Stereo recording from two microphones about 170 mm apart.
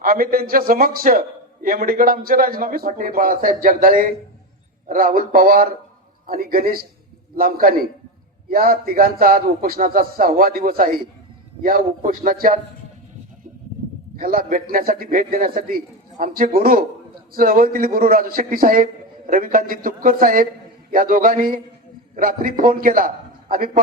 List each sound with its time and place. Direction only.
0.0 s a man's voice: 60° right (ahead or behind)
14.2 s a man's voice: 55° right (ahead or behind)